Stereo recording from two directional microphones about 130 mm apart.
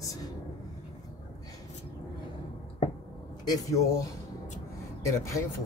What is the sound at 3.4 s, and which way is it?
Speech, 30° left (ahead or behind).